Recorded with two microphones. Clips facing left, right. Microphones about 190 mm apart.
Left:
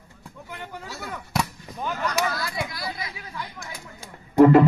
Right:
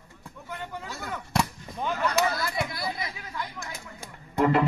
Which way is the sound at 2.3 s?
25° right (ahead or behind).